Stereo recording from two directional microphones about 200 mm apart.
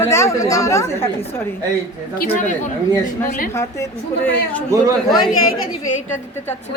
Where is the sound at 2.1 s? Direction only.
45° left (ahead or behind).